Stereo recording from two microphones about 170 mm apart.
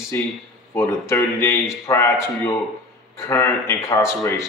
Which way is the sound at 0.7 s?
15° left (ahead or behind).